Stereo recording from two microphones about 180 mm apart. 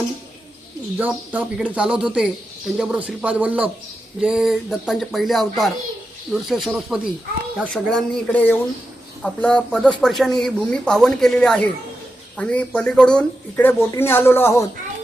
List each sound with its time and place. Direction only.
0.9 s speech: 10° right (ahead or behind); by 14.6 s 15° left (ahead or behind)